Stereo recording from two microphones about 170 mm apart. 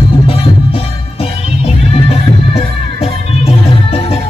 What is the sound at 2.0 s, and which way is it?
Music, 35° left (ahead or behind).